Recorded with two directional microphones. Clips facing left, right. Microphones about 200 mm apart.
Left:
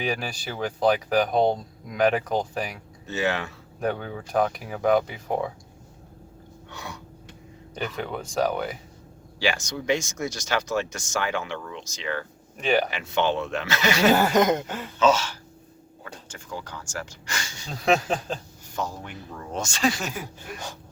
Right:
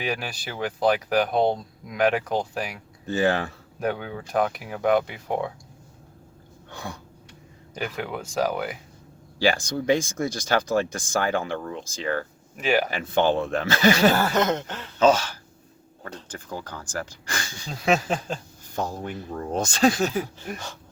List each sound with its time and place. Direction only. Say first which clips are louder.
0.0 s speech: left 1 dB; centre (ahead or behind)
3.2 s speech: right 4 dB; 35° right (ahead or behind)
3.8 s speech: even; centre (ahead or behind)
6.7 s throat clearing: right 3 dB; 50° right (ahead or behind)
7.9 s speech: even; 5° right (ahead or behind)
9.6 s speech: right 3 dB; 50° right (ahead or behind)
11.3 s speech: right 4 dB; 40° right (ahead or behind)
12.5 s speech: even; 5° right (ahead or behind)
12.9 s speech: right 3 dB; 50° right (ahead or behind)
14.1 s a sound: left 3 dB; 15° left (ahead or behind)
16.5 s speech: right 1 dB; 50° right (ahead or behind)
17.7 s speech: even; centre (ahead or behind)
18.8 s speech: right 3 dB; 50° right (ahead or behind)